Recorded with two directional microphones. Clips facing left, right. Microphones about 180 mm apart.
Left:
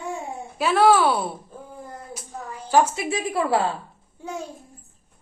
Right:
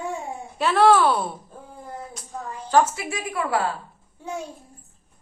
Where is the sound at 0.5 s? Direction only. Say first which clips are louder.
Even; centre (ahead or behind).